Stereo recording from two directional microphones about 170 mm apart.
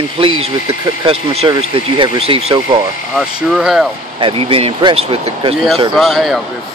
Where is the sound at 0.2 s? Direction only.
30° right (ahead or behind).